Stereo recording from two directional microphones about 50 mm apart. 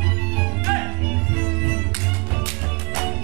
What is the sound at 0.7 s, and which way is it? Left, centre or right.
Music, right.